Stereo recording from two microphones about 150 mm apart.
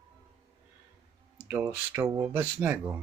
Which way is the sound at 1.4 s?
10° right (ahead or behind).